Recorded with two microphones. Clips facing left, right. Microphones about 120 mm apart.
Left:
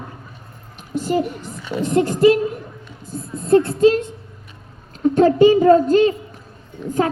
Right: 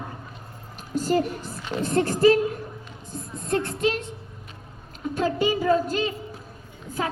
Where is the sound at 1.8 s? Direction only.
20° left (ahead or behind).